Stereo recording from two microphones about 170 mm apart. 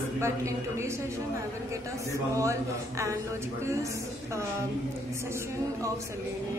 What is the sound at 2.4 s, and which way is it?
A woman's voice, 15° right (ahead or behind).